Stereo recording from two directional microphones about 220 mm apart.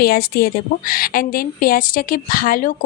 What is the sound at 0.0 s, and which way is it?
A woman's voice, 45° left (ahead or behind).